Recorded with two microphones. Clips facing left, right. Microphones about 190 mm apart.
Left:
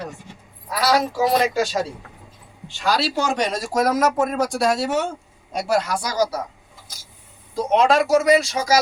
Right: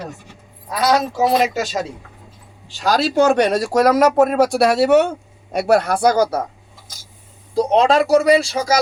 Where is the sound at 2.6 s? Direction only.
45° right (ahead or behind).